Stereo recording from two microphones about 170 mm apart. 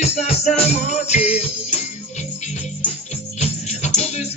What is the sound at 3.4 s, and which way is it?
Music, 40° left (ahead or behind).